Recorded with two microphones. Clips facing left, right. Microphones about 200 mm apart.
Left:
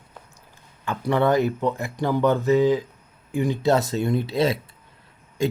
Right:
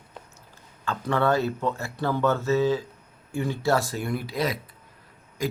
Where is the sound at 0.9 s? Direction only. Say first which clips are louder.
Left 3 dB; 15° left (ahead or behind).